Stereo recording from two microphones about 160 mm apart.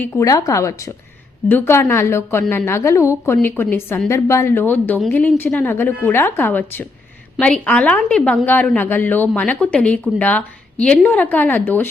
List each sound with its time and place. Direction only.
0.0 s a woman's voice: 15° left (ahead or behind)